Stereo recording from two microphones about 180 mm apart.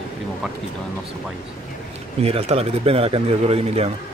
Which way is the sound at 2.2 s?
35° right (ahead or behind).